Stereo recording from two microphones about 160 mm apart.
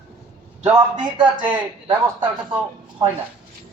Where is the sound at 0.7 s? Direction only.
25° right (ahead or behind).